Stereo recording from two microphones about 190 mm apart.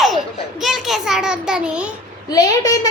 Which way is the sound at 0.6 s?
Centre (ahead or behind).